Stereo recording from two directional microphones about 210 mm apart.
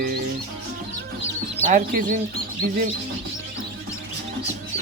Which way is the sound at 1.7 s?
40° right (ahead or behind).